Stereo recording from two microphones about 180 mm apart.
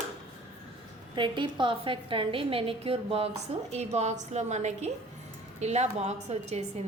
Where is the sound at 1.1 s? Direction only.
25° right (ahead or behind).